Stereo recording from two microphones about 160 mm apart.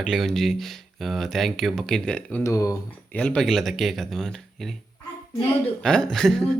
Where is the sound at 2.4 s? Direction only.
20° left (ahead or behind).